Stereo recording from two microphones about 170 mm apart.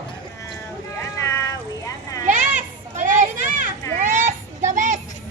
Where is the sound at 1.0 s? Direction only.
15° left (ahead or behind).